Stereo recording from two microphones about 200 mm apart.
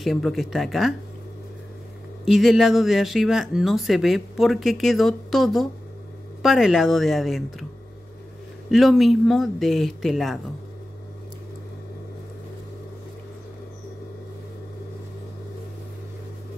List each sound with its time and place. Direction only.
0.0 s speech: centre (ahead or behind)
2.2 s speech: centre (ahead or behind)
8.6 s speech: centre (ahead or behind)